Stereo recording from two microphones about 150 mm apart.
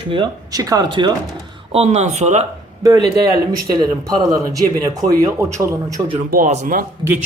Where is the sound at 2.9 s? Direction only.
25° right (ahead or behind).